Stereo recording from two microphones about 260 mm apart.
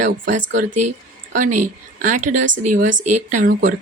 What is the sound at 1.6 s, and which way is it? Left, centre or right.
A woman's voice, right.